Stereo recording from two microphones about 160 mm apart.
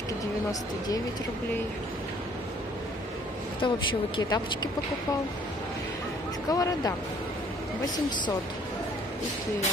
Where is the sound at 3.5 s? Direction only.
30° left (ahead or behind).